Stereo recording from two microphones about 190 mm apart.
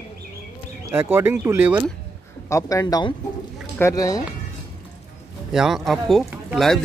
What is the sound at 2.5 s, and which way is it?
Speech, 15° left (ahead or behind).